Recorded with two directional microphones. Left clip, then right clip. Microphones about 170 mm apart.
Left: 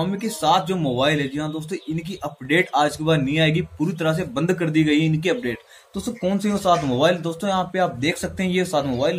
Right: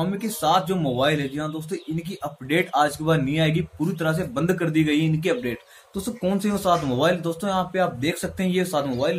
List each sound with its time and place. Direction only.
0.0 s speech: 20° left (ahead or behind)